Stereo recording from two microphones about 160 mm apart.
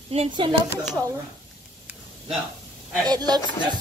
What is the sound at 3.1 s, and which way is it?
Speech, 25° right (ahead or behind).